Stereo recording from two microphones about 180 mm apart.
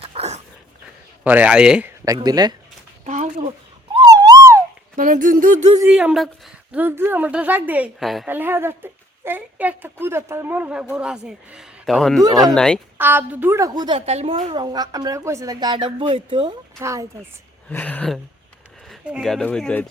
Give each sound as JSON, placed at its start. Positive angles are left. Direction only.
{"t": 0.0, "sound": "dog", "side_deg": -35}
{"t": 1.2, "sound": "a woman's voice", "side_deg": -10}
{"t": 2.0, "sound": "speech", "side_deg": -20}
{"t": 3.1, "sound": "a sound", "side_deg": -40}
{"t": 4.0, "sound": "a sound", "side_deg": -20}
{"t": 4.9, "sound": "speech", "side_deg": -45}
{"t": 5.8, "sound": "a woman's voice", "side_deg": -5}
{"t": 8.3, "sound": "a woman's voice", "side_deg": -10}
{"t": 13.0, "sound": "a woman's voice", "side_deg": -10}
{"t": 14.0, "sound": "speech", "side_deg": -35}
{"t": 16.8, "sound": "a woman's voice", "side_deg": -15}
{"t": 17.7, "sound": "speech", "side_deg": 10}